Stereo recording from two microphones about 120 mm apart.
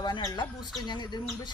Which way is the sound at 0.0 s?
35° left (ahead or behind).